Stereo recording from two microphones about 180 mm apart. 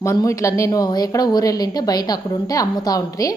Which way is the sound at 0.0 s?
15° left (ahead or behind).